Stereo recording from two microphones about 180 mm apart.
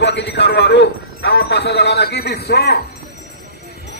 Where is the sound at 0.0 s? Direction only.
70° left (ahead or behind).